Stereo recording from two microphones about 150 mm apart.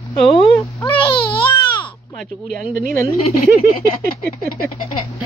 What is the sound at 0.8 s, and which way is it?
Baby cry, 35° left (ahead or behind).